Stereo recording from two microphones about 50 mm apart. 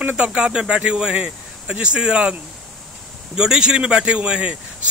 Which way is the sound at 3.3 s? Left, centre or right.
Centre.